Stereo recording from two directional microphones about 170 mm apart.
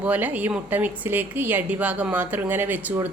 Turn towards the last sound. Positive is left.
turn(degrees=-10)  # may be behind; listen again after turning